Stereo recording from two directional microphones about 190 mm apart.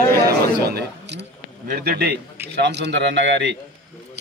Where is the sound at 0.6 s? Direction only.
60° right (ahead or behind).